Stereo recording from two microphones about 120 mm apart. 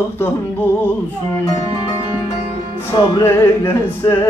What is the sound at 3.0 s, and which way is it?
Music, 35° left (ahead or behind).